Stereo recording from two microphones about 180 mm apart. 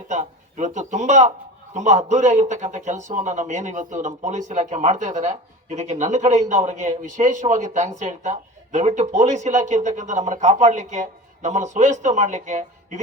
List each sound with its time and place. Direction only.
0.1 s speech: 40° right (ahead or behind)